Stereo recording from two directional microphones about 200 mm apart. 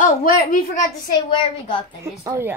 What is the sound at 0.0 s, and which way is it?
Speech, 40° left (ahead or behind).